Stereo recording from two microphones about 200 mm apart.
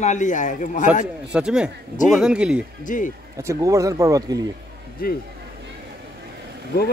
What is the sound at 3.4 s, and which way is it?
Speech, 15° right (ahead or behind).